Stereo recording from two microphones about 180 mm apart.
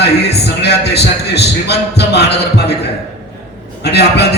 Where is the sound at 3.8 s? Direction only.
65° left (ahead or behind).